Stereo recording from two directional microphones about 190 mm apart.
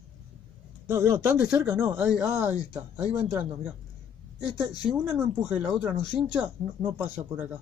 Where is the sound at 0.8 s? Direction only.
15° right (ahead or behind).